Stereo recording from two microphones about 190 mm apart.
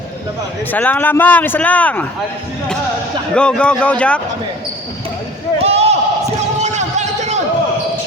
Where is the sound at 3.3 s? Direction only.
5° left (ahead or behind).